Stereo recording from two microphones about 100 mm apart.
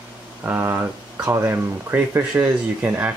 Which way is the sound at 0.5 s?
25° right (ahead or behind).